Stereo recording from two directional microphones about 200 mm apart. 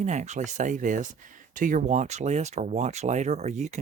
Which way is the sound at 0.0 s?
35° right (ahead or behind).